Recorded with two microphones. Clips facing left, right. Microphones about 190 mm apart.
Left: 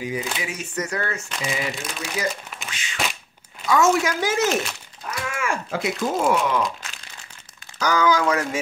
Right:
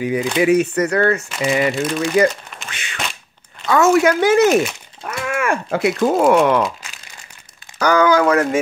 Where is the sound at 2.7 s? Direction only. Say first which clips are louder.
Right 3 dB; 60° right (ahead or behind).